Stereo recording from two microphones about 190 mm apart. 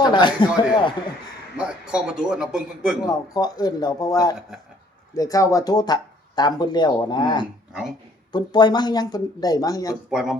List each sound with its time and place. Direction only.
0.0 s speech: 25° left (ahead or behind)
1.5 s speech: 5° right (ahead or behind)
3.1 s speech: 20° left (ahead or behind)
10.1 s speech: centre (ahead or behind)